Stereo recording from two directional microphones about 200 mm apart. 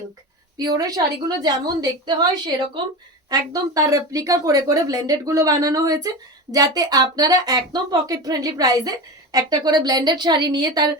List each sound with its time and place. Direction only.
0.5 s a woman's voice: 20° right (ahead or behind)
3.2 s a woman's voice: 20° right (ahead or behind)